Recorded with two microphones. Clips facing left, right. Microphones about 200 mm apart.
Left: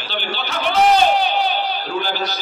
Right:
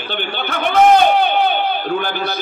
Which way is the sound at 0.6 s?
55° right (ahead or behind).